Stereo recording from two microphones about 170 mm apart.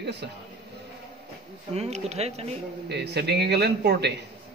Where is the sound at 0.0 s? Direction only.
85° right.